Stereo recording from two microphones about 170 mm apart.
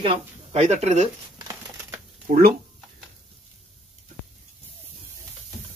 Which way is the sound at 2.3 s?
60° right (ahead or behind).